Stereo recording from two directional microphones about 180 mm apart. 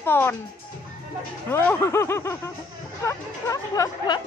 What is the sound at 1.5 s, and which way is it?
A woman's voice, 10° left (ahead or behind).